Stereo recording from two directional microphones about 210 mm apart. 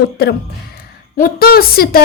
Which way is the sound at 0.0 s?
50° left (ahead or behind).